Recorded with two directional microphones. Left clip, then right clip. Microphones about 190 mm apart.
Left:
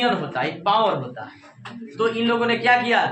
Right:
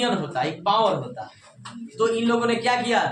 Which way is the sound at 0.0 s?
25° left (ahead or behind).